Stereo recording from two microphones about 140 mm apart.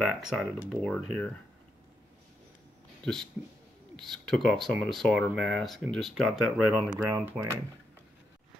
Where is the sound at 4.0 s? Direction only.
5° left (ahead or behind).